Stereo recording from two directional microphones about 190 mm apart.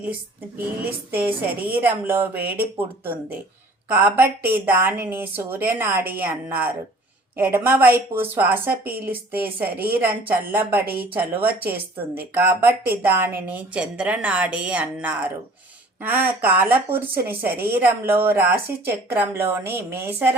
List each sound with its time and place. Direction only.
0.5 s speech: 10° right (ahead or behind)
9.6 s speech: 50° right (ahead or behind)
9.9 s speech: 10° right (ahead or behind)